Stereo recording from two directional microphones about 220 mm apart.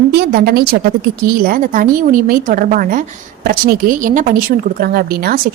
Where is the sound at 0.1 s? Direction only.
45° right (ahead or behind).